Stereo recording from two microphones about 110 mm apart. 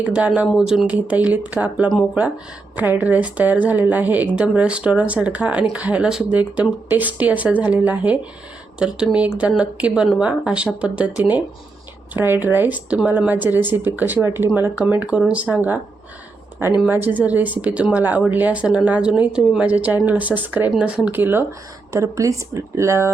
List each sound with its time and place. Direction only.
0.0 s a woman's voice: 10° right (ahead or behind)
12.1 s a woman's voice: 20° right (ahead or behind)
16.9 s a woman's voice: 15° right (ahead or behind)